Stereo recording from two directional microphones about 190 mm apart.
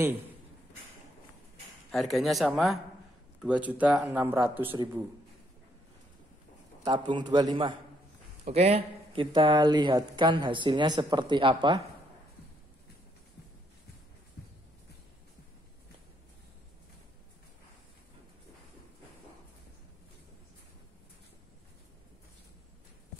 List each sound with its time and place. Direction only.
1.9 s speech: centre (ahead or behind)
6.8 s speech: 25° right (ahead or behind)